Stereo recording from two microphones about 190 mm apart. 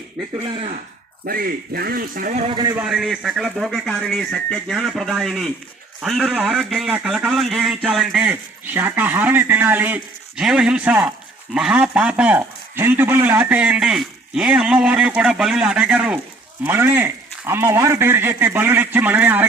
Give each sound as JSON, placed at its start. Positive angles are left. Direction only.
{"t": 0.3, "sound": "speech", "side_deg": -35}
{"t": 1.2, "sound": "speech", "side_deg": -50}
{"t": 2.5, "sound": "a man's voice", "side_deg": -20}
{"t": 2.8, "sound": "a man's voice", "side_deg": -5}